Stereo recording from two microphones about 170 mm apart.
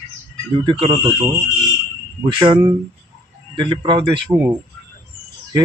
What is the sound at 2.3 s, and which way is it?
Speech, 30° right (ahead or behind).